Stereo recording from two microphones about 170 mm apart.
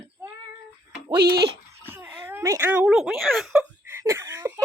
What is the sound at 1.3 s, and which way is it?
Speech, 70° right (ahead or behind).